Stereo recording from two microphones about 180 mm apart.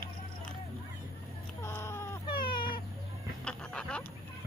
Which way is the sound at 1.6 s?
15° left (ahead or behind).